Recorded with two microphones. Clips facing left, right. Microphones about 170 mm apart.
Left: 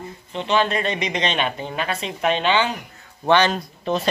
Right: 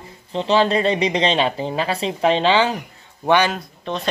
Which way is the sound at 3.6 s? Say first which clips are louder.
Left 3 dB; 5° left (ahead or behind).